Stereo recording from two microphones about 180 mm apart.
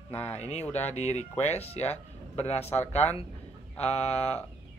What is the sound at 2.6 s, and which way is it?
Speech, 10° left (ahead or behind).